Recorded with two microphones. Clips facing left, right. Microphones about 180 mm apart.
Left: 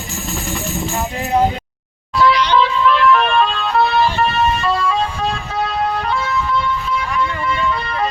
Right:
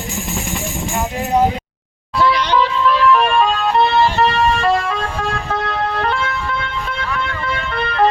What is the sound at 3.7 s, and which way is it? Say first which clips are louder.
Music: even; 25° right (ahead or behind).